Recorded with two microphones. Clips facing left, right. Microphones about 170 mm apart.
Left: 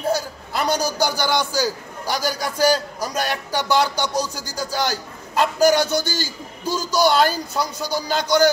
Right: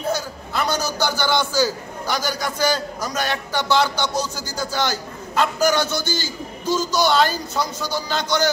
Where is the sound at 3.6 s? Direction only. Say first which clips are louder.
Even; 10° left (ahead or behind).